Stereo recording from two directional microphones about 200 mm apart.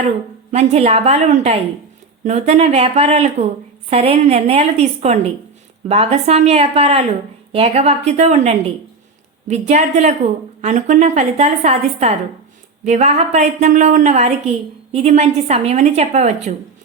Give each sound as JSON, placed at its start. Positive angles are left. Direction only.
{"t": 0.5, "sound": "a woman's voice", "side_deg": -30}